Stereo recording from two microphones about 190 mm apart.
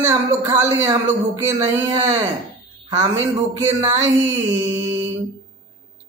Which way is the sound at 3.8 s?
15° right (ahead or behind).